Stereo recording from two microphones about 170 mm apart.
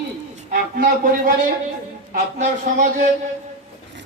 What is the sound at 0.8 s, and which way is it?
Speech, 55° right (ahead or behind).